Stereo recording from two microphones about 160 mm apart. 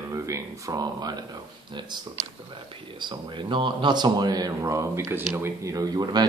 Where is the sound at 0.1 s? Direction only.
20° right (ahead or behind).